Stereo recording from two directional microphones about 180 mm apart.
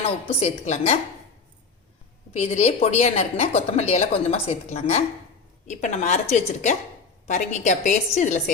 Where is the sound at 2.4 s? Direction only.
40° left (ahead or behind).